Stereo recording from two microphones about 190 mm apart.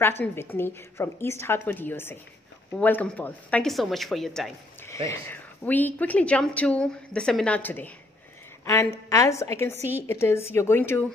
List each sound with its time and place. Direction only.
0.2 s a woman's voice: 10° left (ahead or behind)
4.8 s a woman's voice: 15° left (ahead or behind)